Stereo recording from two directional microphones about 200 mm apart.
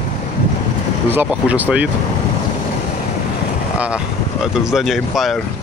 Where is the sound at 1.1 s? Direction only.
5° right (ahead or behind).